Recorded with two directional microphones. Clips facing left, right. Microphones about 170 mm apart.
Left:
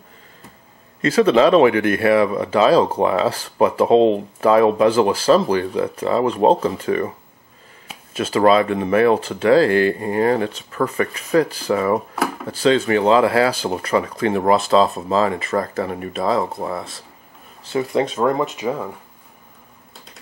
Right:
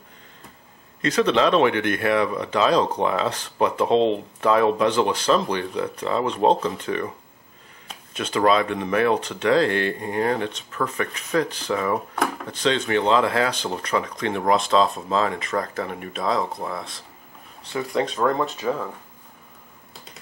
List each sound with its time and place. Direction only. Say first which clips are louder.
1.0 s speech: left 6 dB; 5° left (ahead or behind)
7.9 s a sound: left 6 dB; 5° left (ahead or behind)
8.5 s speech: left 5 dB; 5° left (ahead or behind)
16.5 s speech: left 5 dB; 25° left (ahead or behind)